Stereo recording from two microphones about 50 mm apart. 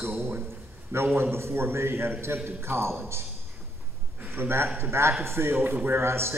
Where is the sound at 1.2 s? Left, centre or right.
Right.